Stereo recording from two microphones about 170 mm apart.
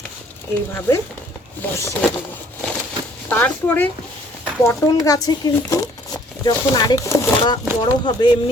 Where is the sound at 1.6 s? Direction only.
15° left (ahead or behind).